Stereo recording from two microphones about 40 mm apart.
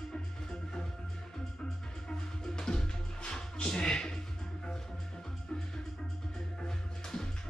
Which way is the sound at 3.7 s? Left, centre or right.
Centre.